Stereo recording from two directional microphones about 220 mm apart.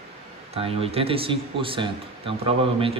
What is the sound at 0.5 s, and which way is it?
A man's voice, 25° right (ahead or behind).